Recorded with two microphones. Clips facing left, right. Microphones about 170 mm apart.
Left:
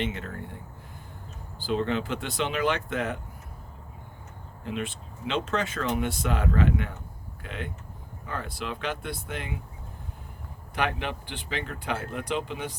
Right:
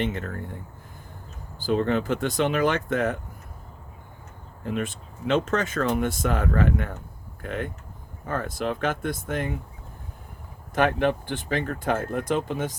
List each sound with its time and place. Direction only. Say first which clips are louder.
0.0 s speech: right 4 dB; 45° right (ahead or behind)
1.5 s speech: right 4 dB; 45° right (ahead or behind)
4.6 s speech: right 4 dB; 45° right (ahead or behind)
10.8 s speech: right 8 dB; 45° right (ahead or behind)